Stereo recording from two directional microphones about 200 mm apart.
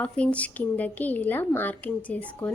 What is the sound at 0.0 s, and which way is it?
A woman's voice, 5° left (ahead or behind).